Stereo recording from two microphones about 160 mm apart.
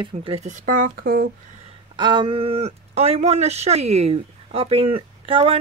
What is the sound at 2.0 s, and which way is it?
Speech, 30° right (ahead or behind).